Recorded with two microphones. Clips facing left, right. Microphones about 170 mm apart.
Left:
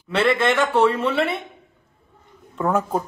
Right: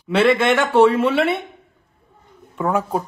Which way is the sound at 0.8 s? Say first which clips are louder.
Right 7 dB; 15° right (ahead or behind).